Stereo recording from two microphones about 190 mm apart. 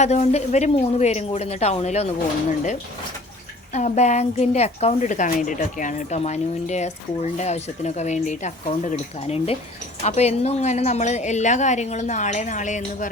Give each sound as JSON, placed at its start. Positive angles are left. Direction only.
{"t": 0.0, "sound": "speech", "side_deg": 35}